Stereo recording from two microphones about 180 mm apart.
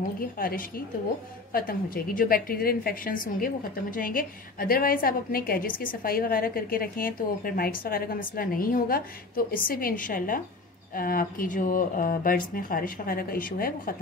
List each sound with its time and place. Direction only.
0.2 s a woman's voice: 55° left (ahead or behind)